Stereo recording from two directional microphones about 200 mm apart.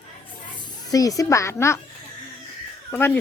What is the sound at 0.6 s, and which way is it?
A child's voice, 15° left (ahead or behind).